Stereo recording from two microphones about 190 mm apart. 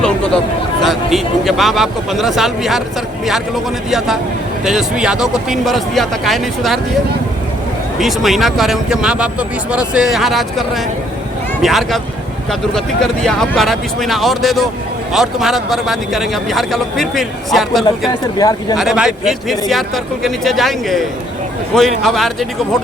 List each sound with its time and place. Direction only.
0.8 s speech: centre (ahead or behind)
7.9 s speech: centre (ahead or behind)
11.6 s speech: centre (ahead or behind)
18.1 s speech: 20° left (ahead or behind)
18.8 s speech: 5° right (ahead or behind)